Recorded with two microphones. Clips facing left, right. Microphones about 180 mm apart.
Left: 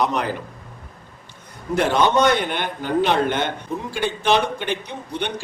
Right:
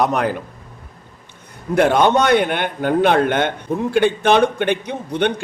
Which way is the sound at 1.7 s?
55° right (ahead or behind).